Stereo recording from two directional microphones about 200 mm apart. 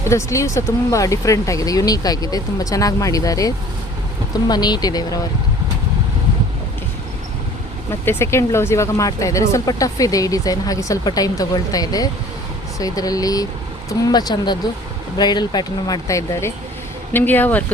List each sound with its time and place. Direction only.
0.1 s speech: 15° left (ahead or behind)
8.0 s speech: 10° left (ahead or behind)